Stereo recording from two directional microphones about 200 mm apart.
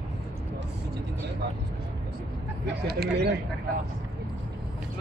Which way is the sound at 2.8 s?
55° right (ahead or behind).